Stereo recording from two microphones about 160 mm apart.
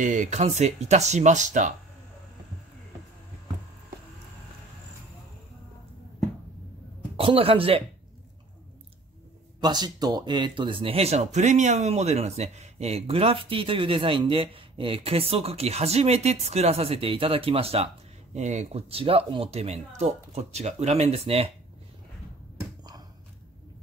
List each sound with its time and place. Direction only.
0.0 s speech: 50° right (ahead or behind)
7.2 s speech: 35° right (ahead or behind)
9.6 s speech: 25° right (ahead or behind)